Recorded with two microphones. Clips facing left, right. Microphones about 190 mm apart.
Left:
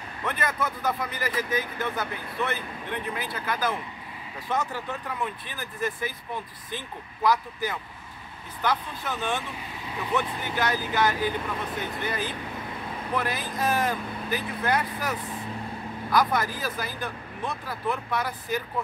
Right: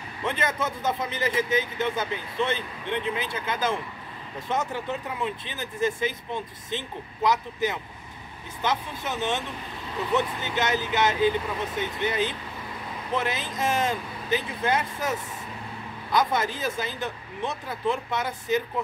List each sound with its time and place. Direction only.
0.2 s speech: 25° right (ahead or behind)